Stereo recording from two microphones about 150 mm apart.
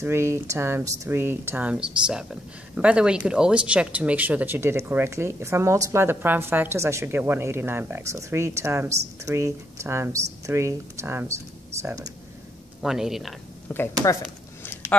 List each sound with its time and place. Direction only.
0.0 s speech: 15° right (ahead or behind)
12.8 s speech: 5° right (ahead or behind)
13.7 s speech: 10° left (ahead or behind)
14.6 s a sound: 15° left (ahead or behind)